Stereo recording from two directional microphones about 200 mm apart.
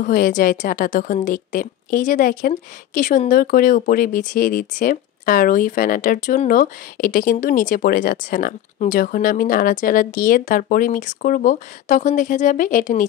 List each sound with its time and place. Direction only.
0.0 s a woman's voice: 45° left (ahead or behind)